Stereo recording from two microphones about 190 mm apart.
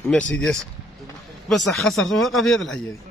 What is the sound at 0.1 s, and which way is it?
A man's voice, 5° left (ahead or behind).